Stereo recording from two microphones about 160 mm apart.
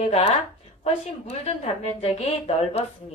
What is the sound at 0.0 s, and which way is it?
A woman's voice, 40° left (ahead or behind).